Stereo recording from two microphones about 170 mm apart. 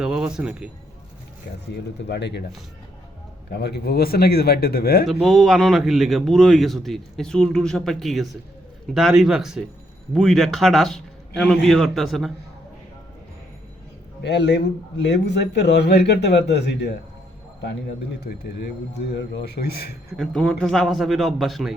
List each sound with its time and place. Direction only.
0.0 s a man's voice: 5° right (ahead or behind)
1.7 s a man's voice: 85° left
3.5 s speech: 70° left (ahead or behind)
5.2 s a man's voice: centre (ahead or behind)
14.2 s a man's voice: 90° left
18.2 s a man's voice: 70° left (ahead or behind)
18.9 s a man's voice: 85° left; by 20.1 s 65° left (ahead or behind)
20.1 s a man's voice: 5° left (ahead or behind)